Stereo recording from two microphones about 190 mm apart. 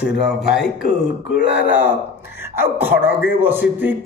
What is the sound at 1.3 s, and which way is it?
Speech, 65° left (ahead or behind).